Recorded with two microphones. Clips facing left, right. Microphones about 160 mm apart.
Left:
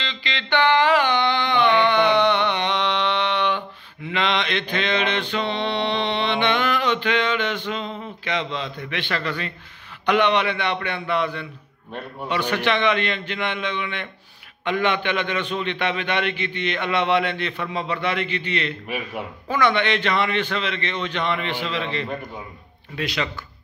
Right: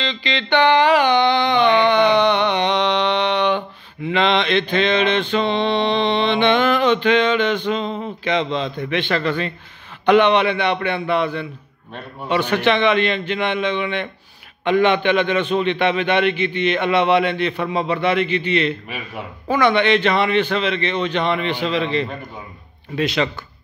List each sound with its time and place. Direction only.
0.0 s mantra: 20° right (ahead or behind)
10.0 s a man's voice: 20° right (ahead or behind)